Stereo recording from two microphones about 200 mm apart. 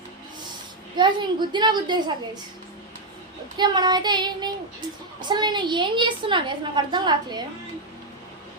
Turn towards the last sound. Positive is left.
turn(degrees=-20)  # may be behind; listen again after turning